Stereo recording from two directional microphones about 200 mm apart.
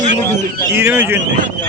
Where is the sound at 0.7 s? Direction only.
10° right (ahead or behind).